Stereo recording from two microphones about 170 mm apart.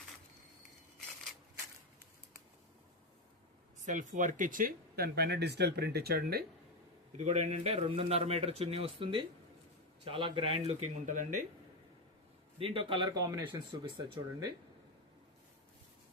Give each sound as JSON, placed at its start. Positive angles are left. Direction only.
{"t": 3.8, "sound": "speech", "side_deg": -50}
{"t": 7.2, "sound": "speech", "side_deg": -40}
{"t": 12.5, "sound": "speech", "side_deg": -30}